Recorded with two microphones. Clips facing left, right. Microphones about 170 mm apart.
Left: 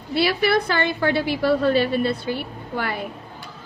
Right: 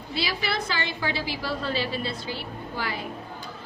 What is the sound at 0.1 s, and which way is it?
A woman's voice, 60° left (ahead or behind).